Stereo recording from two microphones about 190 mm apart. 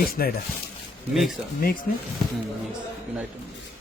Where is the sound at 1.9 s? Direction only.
50° left (ahead or behind).